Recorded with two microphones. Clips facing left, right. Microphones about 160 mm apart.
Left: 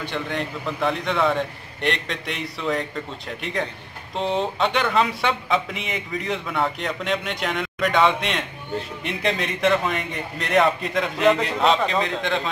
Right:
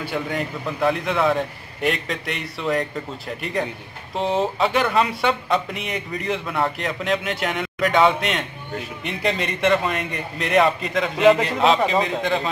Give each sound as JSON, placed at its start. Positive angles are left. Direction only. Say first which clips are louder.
{"t": 0.0, "sound": "speech", "louder": "right 2 dB", "side_deg": -5}